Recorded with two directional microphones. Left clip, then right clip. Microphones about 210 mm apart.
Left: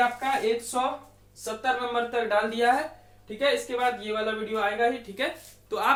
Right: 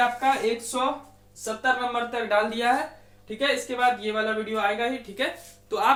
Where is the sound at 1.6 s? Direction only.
15° left (ahead or behind).